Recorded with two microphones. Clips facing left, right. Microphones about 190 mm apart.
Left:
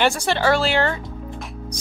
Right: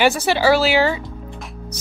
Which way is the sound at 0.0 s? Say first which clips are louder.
Right 3 dB; 5° right (ahead or behind).